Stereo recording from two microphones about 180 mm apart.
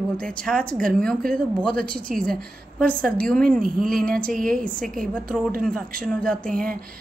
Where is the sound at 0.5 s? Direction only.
5° left (ahead or behind).